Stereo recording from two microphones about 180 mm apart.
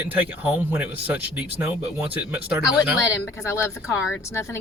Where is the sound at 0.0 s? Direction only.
10° right (ahead or behind).